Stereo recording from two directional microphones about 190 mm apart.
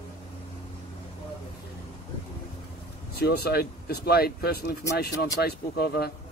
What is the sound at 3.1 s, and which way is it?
Speech, 55° left (ahead or behind).